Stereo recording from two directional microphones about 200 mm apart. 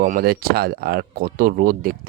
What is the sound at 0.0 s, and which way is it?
Speech, 45° right (ahead or behind).